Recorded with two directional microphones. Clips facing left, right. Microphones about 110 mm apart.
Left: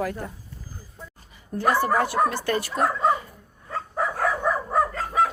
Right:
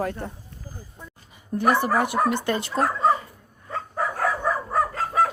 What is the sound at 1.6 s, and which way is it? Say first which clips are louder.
A woman's voice: right 1 dB; 20° right (ahead or behind).